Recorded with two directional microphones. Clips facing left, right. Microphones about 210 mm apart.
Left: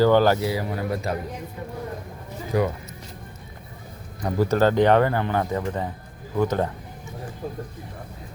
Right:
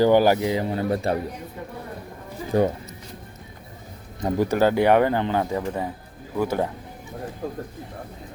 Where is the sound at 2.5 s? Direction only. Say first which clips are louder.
Right 3 dB; 25° right (ahead or behind).